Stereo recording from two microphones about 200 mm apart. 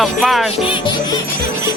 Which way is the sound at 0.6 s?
25° left (ahead or behind).